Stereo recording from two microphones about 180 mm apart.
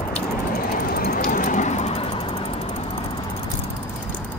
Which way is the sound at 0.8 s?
55° left (ahead or behind).